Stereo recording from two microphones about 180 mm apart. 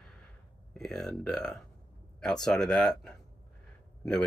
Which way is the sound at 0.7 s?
Centre (ahead or behind).